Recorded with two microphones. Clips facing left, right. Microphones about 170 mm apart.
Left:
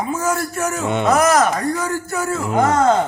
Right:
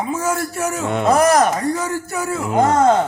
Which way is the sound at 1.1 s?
35° right (ahead or behind).